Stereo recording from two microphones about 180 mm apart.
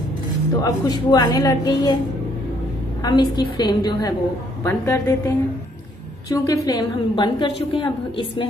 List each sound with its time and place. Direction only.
0.6 s a woman's voice: 20° left (ahead or behind)
3.0 s a woman's voice: 25° left (ahead or behind)